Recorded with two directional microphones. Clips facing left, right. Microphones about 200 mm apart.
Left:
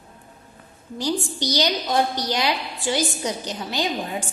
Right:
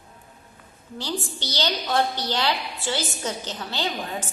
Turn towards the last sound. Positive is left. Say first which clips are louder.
# left 3 dB
turn(degrees=15)  # may be behind; listen again after turning